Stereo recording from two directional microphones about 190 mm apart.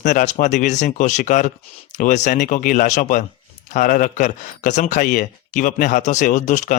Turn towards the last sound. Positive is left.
turn(degrees=40)  # may be behind; listen again after turning